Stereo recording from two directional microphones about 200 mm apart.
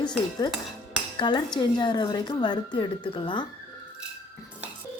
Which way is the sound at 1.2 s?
20° left (ahead or behind).